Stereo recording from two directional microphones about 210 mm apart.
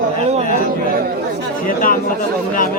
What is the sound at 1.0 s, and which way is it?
Speech, 45° right (ahead or behind).